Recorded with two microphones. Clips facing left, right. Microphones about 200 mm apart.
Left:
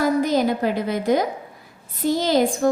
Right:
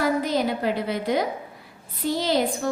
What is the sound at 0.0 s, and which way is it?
A woman's voice, 45° left (ahead or behind).